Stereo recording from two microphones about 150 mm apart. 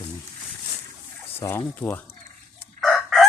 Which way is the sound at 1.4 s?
15° left (ahead or behind).